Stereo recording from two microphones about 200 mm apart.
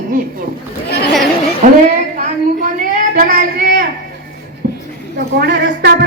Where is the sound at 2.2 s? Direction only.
45° right (ahead or behind).